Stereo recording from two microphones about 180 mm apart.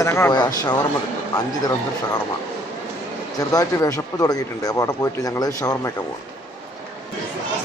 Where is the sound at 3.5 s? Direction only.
20° left (ahead or behind).